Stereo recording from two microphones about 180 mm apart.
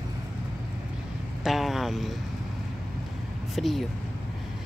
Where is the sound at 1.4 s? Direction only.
Centre (ahead or behind).